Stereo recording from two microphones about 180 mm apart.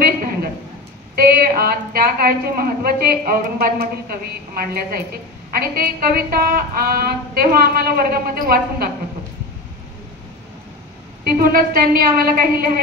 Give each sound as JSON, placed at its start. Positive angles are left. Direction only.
{"t": 1.1, "sound": "a woman's voice", "side_deg": -55}
{"t": 11.4, "sound": "a woman's voice", "side_deg": -55}